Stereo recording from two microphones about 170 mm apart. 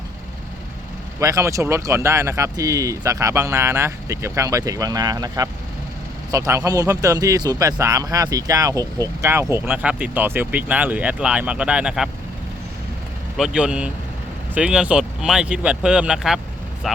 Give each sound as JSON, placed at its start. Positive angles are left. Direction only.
{"t": 1.2, "sound": "speech", "side_deg": -20}
{"t": 13.3, "sound": "speech", "side_deg": -5}